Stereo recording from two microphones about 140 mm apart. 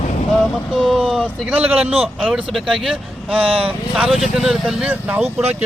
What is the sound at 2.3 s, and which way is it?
Speech, 5° right (ahead or behind).